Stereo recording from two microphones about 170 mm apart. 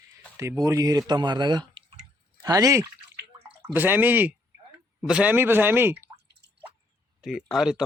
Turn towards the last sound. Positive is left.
turn(degrees=0)  # may be behind; listen again after turning